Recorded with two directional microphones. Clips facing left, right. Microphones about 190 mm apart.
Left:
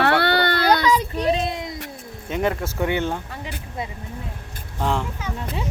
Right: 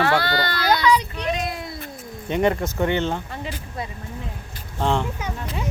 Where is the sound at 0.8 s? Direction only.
45° left (ahead or behind).